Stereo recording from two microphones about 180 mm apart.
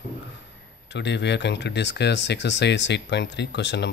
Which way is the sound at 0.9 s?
75° left (ahead or behind).